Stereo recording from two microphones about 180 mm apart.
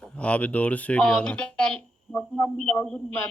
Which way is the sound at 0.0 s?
5° left (ahead or behind).